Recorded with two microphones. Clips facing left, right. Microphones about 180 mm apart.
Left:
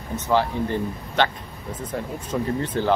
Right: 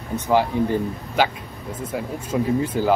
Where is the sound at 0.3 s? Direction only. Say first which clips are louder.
Right 3 dB; 15° right (ahead or behind).